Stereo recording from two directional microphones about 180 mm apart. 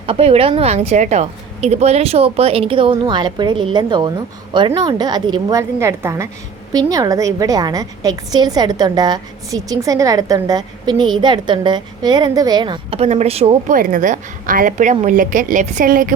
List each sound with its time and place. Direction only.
0.0 s a woman's voice: 30° right (ahead or behind)
13.7 s a woman's voice: 45° right (ahead or behind)